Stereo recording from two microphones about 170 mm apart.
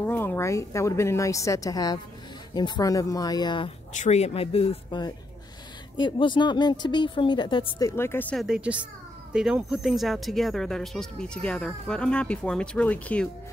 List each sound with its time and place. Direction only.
0.0 s a woman's voice: 10° left (ahead or behind); by 3.7 s 25° left (ahead or behind)
3.9 s speech: 45° left (ahead or behind); by 7.9 s 30° left (ahead or behind)
7.9 s a woman's voice: 15° left (ahead or behind)
8.4 s a woman's voice: 5° right (ahead or behind)